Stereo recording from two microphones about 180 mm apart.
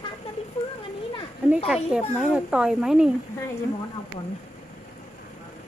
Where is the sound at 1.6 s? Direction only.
Centre (ahead or behind).